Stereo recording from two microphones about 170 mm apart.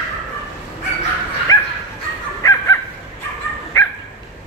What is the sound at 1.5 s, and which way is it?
Dog, 20° left (ahead or behind).